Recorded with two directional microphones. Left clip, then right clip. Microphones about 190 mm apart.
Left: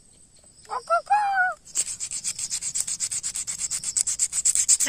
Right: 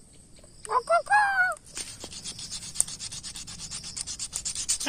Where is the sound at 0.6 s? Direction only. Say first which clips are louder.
Right 1 dB; 25° right (ahead or behind).